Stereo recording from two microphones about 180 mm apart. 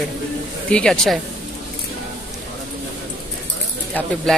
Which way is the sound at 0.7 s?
5° left (ahead or behind).